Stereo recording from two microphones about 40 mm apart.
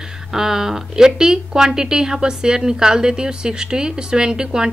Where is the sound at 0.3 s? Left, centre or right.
Centre.